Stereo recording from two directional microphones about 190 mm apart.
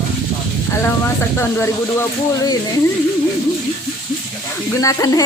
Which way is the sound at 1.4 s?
15° left (ahead or behind).